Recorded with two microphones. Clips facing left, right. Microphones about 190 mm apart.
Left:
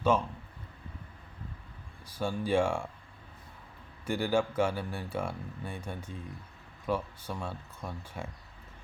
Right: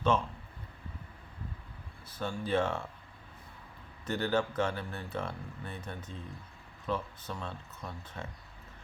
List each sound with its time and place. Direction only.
0.1 s speech: 10° left (ahead or behind)
2.0 s speech: 10° left (ahead or behind)
4.0 s speech: 10° left (ahead or behind)